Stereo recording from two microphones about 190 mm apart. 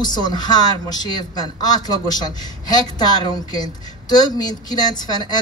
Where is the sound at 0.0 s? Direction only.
20° left (ahead or behind).